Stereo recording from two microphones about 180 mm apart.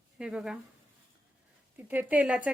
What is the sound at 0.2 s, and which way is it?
Speech, 5° right (ahead or behind).